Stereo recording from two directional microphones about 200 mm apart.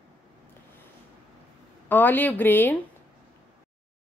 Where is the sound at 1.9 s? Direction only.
10° left (ahead or behind).